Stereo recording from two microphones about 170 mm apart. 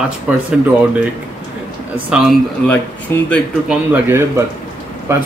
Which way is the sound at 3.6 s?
10° right (ahead or behind).